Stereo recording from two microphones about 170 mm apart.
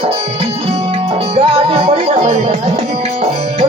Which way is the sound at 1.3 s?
35° right (ahead or behind).